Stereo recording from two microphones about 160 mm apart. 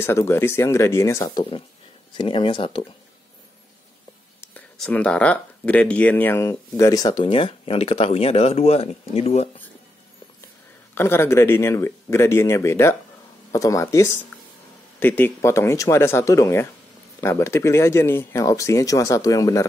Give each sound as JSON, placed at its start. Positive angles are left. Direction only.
{"t": 0.0, "sound": "speech", "side_deg": 15}
{"t": 2.1, "sound": "speech", "side_deg": 30}
{"t": 4.7, "sound": "speech", "side_deg": 5}
{"t": 11.0, "sound": "speech", "side_deg": 15}